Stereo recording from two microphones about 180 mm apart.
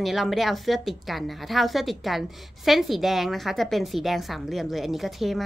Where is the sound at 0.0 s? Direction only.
Centre (ahead or behind).